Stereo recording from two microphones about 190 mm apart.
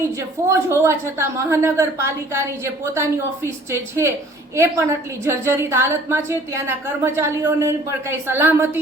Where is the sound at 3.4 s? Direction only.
15° right (ahead or behind).